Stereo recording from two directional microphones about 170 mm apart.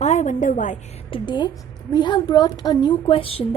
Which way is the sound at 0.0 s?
45° left (ahead or behind).